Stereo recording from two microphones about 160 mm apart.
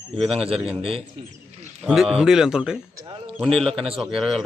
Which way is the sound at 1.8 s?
Centre (ahead or behind).